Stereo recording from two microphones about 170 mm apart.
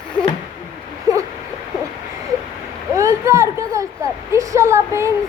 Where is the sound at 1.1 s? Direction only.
20° right (ahead or behind).